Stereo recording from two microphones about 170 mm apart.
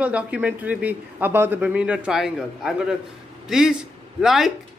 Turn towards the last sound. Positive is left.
turn(degrees=0)  # may be behind; listen again after turning